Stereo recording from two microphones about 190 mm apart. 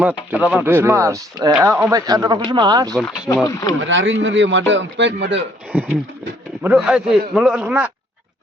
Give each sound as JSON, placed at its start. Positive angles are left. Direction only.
{"t": 0.0, "sound": "speech", "side_deg": -10}
{"t": 3.4, "sound": "speech", "side_deg": 20}
{"t": 3.8, "sound": "a man's voice", "side_deg": -75}
{"t": 5.7, "sound": "a man's voice", "side_deg": -10}